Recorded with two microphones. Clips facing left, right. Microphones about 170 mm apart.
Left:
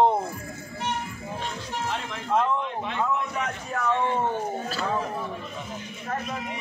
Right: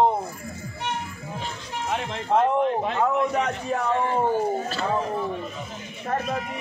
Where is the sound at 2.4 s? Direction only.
45° right (ahead or behind).